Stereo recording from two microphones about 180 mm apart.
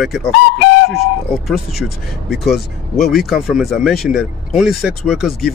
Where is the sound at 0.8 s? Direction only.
60° left (ahead or behind).